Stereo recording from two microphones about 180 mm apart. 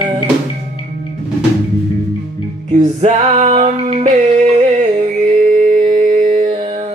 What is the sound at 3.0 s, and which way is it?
Music, 40° right (ahead or behind).